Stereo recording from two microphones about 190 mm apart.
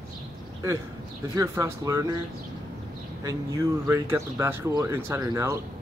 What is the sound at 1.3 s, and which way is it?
Speech, 15° right (ahead or behind).